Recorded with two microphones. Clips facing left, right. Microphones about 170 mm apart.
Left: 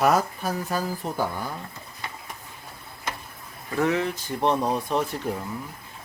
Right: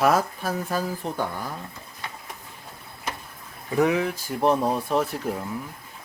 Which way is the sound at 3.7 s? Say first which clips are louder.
Right 2 dB; 15° right (ahead or behind).